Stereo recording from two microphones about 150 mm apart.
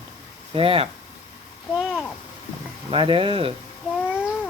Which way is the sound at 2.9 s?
35° right (ahead or behind).